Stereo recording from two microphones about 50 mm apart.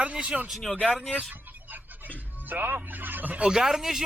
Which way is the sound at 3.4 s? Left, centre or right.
Centre.